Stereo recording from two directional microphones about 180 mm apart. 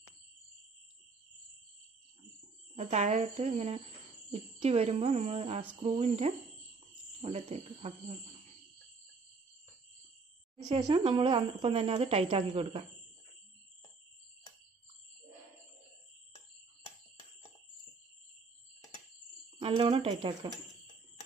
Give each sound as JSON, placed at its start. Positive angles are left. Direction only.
{"t": 2.7, "sound": "speech", "side_deg": -40}
{"t": 10.7, "sound": "speech", "side_deg": -20}
{"t": 19.6, "sound": "speech", "side_deg": -25}